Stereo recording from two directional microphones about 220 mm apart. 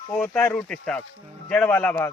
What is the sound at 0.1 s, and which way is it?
Speech, 5° left (ahead or behind).